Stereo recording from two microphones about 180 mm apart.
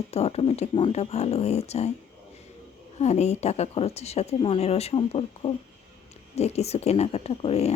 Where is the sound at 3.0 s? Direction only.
35° left (ahead or behind).